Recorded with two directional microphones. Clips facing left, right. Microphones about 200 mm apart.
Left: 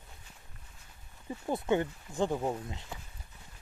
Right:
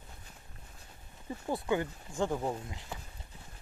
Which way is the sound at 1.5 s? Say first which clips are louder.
Left 2 dB; 25° left (ahead or behind).